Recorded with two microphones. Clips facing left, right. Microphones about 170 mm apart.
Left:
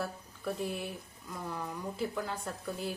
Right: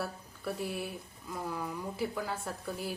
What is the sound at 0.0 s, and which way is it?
A woman's voice, 5° right (ahead or behind).